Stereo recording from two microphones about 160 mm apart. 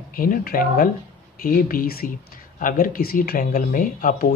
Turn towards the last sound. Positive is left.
turn(degrees=60)  # may be behind; listen again after turning